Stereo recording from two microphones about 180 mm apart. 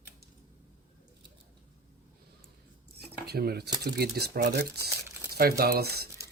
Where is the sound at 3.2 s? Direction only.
60° right (ahead or behind).